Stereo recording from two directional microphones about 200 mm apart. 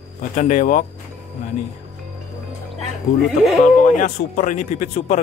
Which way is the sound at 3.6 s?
40° left (ahead or behind).